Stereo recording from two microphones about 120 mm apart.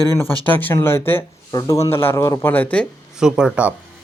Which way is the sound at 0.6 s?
15° left (ahead or behind).